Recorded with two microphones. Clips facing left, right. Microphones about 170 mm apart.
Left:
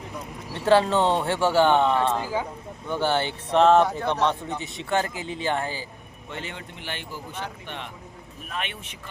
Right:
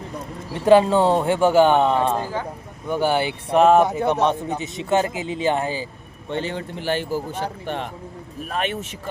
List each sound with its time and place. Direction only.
0.6 s a man's voice: 15° right (ahead or behind)
2.2 s speech: 10° left (ahead or behind)
2.9 s a man's voice: 10° right (ahead or behind)
6.3 s speech: 35° right (ahead or behind)